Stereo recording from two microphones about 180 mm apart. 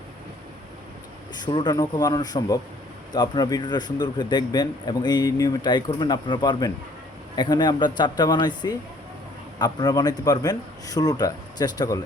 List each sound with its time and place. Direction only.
1.5 s a man's voice: 25° left (ahead or behind)